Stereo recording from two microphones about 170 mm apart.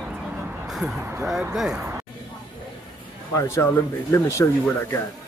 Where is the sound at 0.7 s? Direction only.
Centre (ahead or behind).